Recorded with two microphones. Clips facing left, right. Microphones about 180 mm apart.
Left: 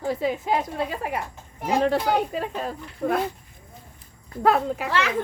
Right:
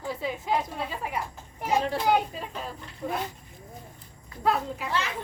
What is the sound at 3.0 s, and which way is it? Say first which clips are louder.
Speech: left 8 dB; 55° left (ahead or behind).